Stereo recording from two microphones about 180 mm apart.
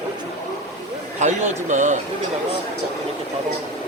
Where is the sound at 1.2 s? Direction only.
40° right (ahead or behind).